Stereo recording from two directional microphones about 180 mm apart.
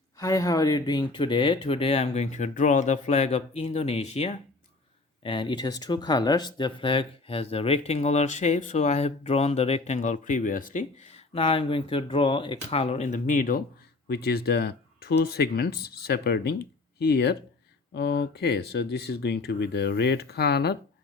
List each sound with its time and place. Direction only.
0.2 s speech: 20° left (ahead or behind); by 11.1 s 45° left (ahead or behind)
11.3 s speech: 30° left (ahead or behind); by 13.6 s 50° left (ahead or behind)
14.1 s speech: 65° left (ahead or behind)